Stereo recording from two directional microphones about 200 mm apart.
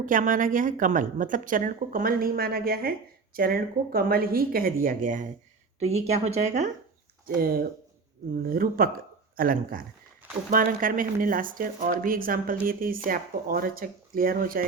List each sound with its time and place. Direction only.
0.0 s speech: 40° right (ahead or behind)
7.3 s speech: 45° right (ahead or behind)